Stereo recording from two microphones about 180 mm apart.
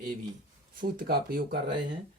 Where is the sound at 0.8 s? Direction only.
55° right (ahead or behind).